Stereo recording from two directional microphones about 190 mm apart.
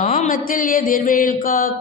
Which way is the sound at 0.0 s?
40° left (ahead or behind).